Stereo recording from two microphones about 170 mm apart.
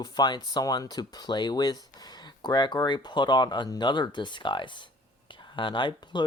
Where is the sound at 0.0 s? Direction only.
25° left (ahead or behind).